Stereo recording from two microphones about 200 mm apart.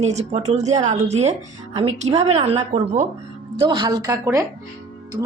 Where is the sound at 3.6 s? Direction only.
20° right (ahead or behind).